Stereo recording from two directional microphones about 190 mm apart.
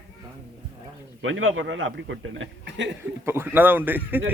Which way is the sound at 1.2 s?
90° right.